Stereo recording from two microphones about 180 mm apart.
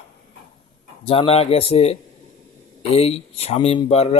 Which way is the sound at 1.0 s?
35° left (ahead or behind).